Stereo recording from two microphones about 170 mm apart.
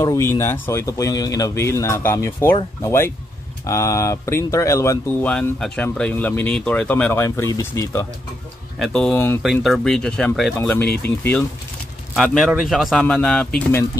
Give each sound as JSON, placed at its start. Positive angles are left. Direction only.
{"t": 0.0, "sound": "speech", "side_deg": 20}
{"t": 5.3, "sound": "speech", "side_deg": 5}
{"t": 8.7, "sound": "speech", "side_deg": 0}
{"t": 9.4, "sound": "speech", "side_deg": 0}